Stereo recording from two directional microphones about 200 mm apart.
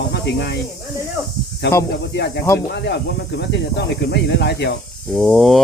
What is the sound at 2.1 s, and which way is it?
Speech, 55° left (ahead or behind).